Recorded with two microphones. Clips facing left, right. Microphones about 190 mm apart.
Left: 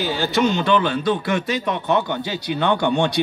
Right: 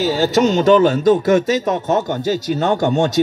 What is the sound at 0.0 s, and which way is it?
A man's voice, 40° right (ahead or behind).